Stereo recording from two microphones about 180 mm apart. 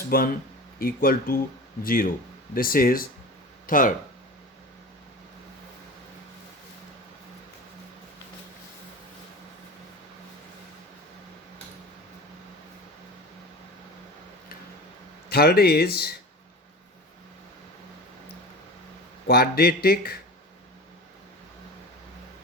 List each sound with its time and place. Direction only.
0.1 s speech: 55° left (ahead or behind)
15.3 s speech: 60° left (ahead or behind)
19.3 s speech: 60° left (ahead or behind)